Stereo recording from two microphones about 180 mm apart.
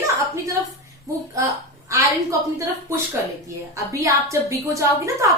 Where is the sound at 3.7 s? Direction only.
15° right (ahead or behind).